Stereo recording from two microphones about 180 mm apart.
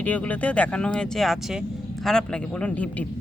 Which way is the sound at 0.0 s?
10° left (ahead or behind).